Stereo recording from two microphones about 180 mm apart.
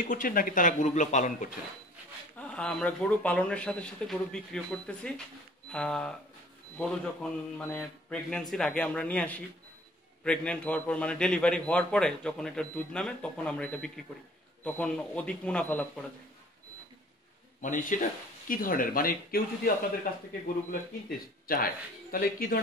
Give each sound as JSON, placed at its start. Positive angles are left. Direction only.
{"t": 0.1, "sound": "speech", "side_deg": 50}
{"t": 2.3, "sound": "a man's voice", "side_deg": 5}
{"t": 17.6, "sound": "speech", "side_deg": 45}
{"t": 21.5, "sound": "speech", "side_deg": 55}